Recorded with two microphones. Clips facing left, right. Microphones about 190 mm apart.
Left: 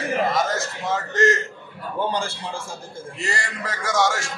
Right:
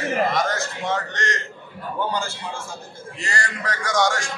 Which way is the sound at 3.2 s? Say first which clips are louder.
Right 1 dB; 5° left (ahead or behind).